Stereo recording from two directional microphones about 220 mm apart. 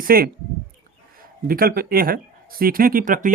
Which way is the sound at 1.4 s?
40° right (ahead or behind).